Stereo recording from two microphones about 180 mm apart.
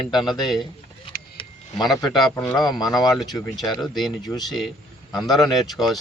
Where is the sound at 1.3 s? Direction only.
25° left (ahead or behind).